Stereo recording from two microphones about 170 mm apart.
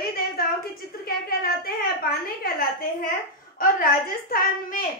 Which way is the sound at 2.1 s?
55° left (ahead or behind).